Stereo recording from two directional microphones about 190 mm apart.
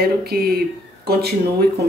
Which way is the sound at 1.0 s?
55° right (ahead or behind).